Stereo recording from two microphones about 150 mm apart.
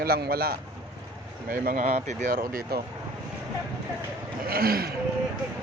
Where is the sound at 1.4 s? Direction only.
65° right (ahead or behind); by 2.8 s 85° right.